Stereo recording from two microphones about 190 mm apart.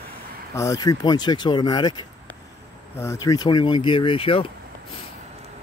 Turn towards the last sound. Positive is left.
turn(degrees=30)  # may be behind; listen again after turning